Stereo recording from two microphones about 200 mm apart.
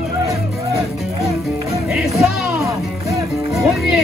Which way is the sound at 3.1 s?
Centre (ahead or behind).